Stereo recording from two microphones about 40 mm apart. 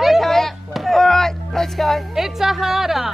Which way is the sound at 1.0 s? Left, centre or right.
Centre.